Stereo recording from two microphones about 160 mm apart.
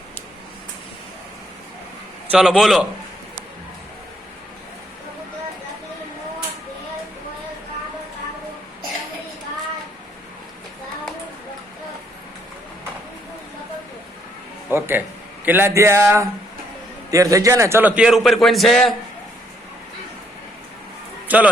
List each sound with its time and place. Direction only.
2.2 s a man's voice: 5° right (ahead or behind)
14.7 s a sound: 15° right (ahead or behind)
15.4 s a man's voice: 15° right (ahead or behind)
21.2 s music: 10° right (ahead or behind)